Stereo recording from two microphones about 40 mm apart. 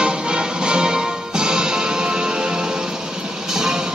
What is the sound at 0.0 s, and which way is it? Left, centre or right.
Music, right.